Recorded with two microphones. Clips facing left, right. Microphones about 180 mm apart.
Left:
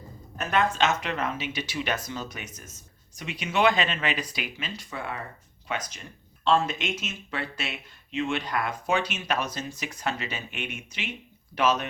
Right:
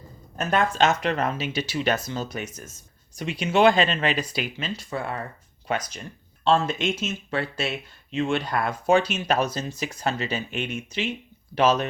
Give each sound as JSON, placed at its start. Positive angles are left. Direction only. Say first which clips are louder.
{"t": 0.3, "sound": "speech", "louder": "right 3 dB", "side_deg": -40}
{"t": 6.4, "sound": "speech", "louder": "right 3 dB", "side_deg": -30}